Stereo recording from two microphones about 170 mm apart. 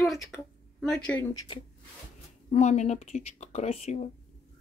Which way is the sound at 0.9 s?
5° left (ahead or behind).